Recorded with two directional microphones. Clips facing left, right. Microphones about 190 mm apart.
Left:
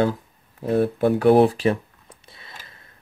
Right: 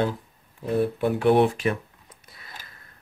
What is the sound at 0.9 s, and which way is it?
Speech, 40° left (ahead or behind).